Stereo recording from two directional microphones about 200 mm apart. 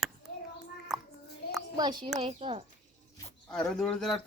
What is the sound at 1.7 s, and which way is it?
Speech, 20° right (ahead or behind).